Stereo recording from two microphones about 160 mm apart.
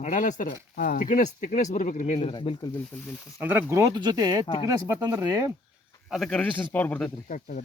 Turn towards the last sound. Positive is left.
turn(degrees=55)  # may be behind; listen again after turning